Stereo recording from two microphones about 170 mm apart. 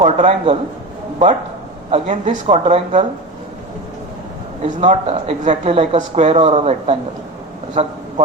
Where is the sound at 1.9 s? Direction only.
45° right (ahead or behind).